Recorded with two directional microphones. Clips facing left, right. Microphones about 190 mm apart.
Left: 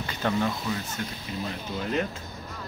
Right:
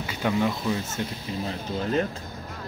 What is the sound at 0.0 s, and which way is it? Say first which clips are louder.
Speech: right 2 dB; 10° right (ahead or behind).